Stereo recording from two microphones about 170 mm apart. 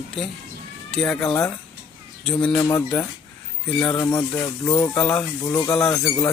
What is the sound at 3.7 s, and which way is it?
Speech, 5° left (ahead or behind).